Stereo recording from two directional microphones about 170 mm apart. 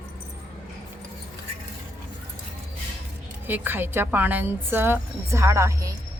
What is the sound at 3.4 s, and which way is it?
A woman's voice, 10° right (ahead or behind).